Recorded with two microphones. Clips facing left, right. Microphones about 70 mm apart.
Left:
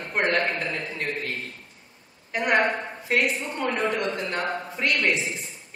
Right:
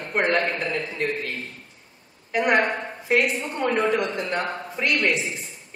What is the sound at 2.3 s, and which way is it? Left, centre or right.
A woman's voice, centre.